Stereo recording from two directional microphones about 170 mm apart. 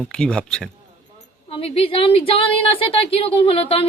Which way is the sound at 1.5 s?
35° left (ahead or behind).